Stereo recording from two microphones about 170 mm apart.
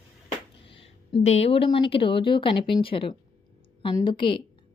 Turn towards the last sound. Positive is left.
turn(degrees=30)  # may be behind; listen again after turning